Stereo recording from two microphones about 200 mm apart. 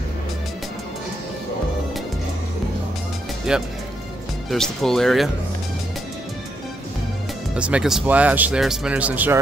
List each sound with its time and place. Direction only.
3.5 s speech: 5° right (ahead or behind)
7.5 s speech: 5° right (ahead or behind)